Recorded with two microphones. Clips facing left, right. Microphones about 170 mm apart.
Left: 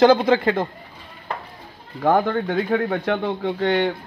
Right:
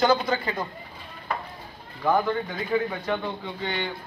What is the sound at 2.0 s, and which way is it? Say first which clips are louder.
Speech: left 5 dB; 60° left (ahead or behind).